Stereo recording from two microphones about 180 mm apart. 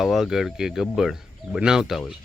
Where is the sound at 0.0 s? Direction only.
Centre (ahead or behind).